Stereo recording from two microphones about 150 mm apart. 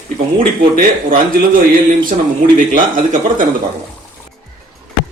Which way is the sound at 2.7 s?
60° right (ahead or behind).